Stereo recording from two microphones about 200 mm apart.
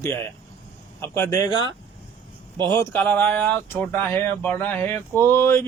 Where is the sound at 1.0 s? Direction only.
15° left (ahead or behind).